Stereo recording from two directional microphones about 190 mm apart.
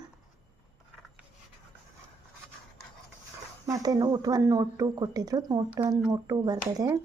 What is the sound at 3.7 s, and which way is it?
Speech, 20° right (ahead or behind).